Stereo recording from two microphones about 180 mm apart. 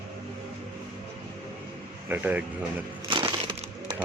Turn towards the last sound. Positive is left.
turn(degrees=-25)  # may be behind; listen again after turning